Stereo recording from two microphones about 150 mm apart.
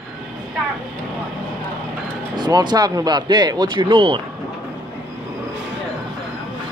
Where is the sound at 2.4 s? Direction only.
30° right (ahead or behind).